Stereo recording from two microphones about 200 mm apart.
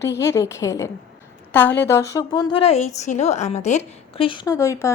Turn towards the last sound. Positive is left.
turn(degrees=15)  # may be behind; listen again after turning